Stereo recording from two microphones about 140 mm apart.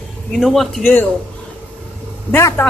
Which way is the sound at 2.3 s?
15° left (ahead or behind).